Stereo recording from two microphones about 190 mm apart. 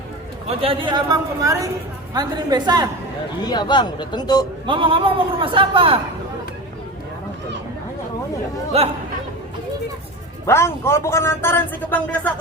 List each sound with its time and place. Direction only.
0.4 s a man's voice: 30° right (ahead or behind)
3.4 s a man's voice: 20° left (ahead or behind)
4.6 s a man's voice: 25° right (ahead or behind)
8.7 s speech: 30° right (ahead or behind)
10.4 s a man's voice: 15° left (ahead or behind)